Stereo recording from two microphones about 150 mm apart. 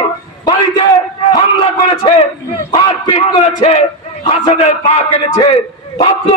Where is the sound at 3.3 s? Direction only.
40° left (ahead or behind).